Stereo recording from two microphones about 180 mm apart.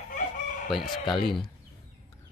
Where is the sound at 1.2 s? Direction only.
Centre (ahead or behind).